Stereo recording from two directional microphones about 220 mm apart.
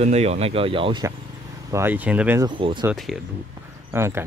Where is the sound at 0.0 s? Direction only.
30° right (ahead or behind).